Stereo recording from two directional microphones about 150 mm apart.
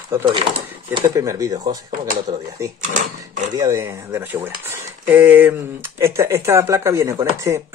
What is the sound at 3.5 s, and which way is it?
Speech, 20° right (ahead or behind).